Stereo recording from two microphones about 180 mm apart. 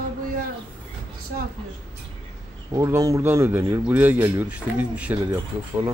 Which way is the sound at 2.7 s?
15° right (ahead or behind).